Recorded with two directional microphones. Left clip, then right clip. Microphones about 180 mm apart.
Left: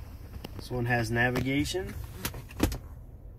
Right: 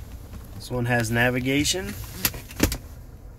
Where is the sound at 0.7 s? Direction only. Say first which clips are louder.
Right 5 dB; 20° right (ahead or behind).